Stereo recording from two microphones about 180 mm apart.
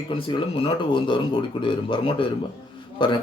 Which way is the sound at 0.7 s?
25° left (ahead or behind).